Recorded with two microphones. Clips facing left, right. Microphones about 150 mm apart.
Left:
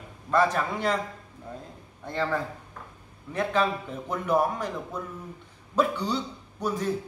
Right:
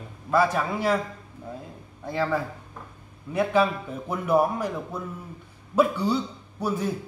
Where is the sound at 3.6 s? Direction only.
10° right (ahead or behind).